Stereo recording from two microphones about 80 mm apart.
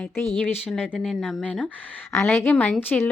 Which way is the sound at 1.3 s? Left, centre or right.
Centre.